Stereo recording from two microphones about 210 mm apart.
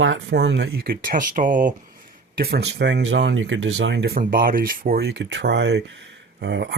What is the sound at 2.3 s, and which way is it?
Speech, 50° right (ahead or behind).